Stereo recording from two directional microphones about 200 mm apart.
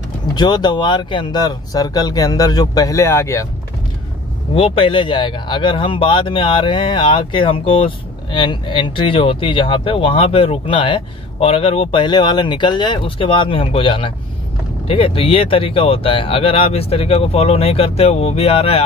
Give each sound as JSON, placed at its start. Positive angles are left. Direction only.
{"t": 0.4, "sound": "speech", "side_deg": 20}
{"t": 4.6, "sound": "speech", "side_deg": 25}